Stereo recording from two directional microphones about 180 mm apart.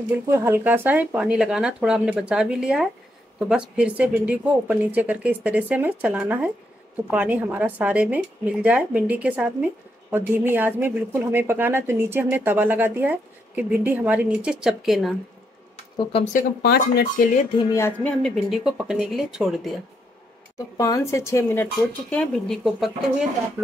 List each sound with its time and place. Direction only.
0.3 s a woman's voice: 15° right (ahead or behind)
16.3 s speech: 60° left (ahead or behind)
17.6 s speech: 20° left (ahead or behind)
18.2 s speech: centre (ahead or behind)
20.5 s speech: 20° left (ahead or behind); by 22.8 s centre (ahead or behind)